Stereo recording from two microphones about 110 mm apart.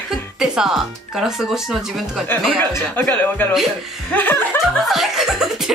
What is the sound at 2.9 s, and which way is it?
Speech, 15° left (ahead or behind).